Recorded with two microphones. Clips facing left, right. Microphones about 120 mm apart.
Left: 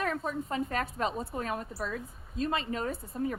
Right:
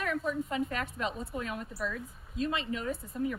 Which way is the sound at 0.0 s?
35° left (ahead or behind).